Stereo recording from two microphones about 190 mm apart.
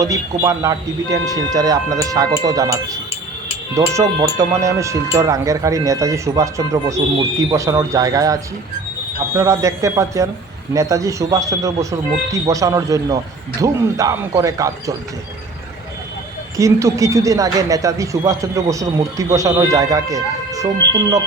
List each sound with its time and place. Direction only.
0.0 s speech: 20° right (ahead or behind)
16.6 s speech: 15° right (ahead or behind)